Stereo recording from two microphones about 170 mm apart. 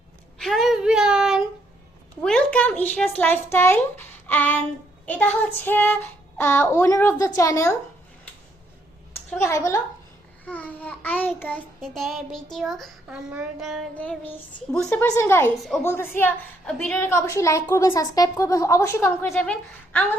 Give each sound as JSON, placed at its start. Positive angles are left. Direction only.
{"t": 0.3, "sound": "a sound", "side_deg": 0}
{"t": 2.2, "sound": "a child's voice", "side_deg": 5}
{"t": 9.4, "sound": "a woman's voice", "side_deg": 15}
{"t": 10.4, "sound": "child singing", "side_deg": 10}
{"t": 13.9, "sound": "a woman's voice", "side_deg": 10}